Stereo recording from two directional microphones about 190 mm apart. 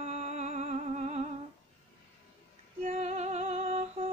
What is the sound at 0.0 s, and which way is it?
Music, 35° right (ahead or behind).